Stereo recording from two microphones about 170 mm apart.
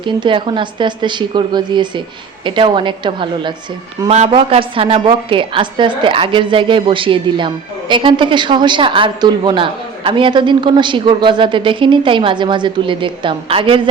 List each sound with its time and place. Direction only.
0.0 s a woman's voice: 30° right (ahead or behind)